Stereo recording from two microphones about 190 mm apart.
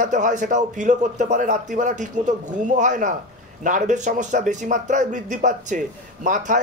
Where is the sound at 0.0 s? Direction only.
40° right (ahead or behind).